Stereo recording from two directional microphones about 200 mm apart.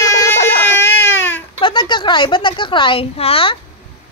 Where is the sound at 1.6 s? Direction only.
25° left (ahead or behind).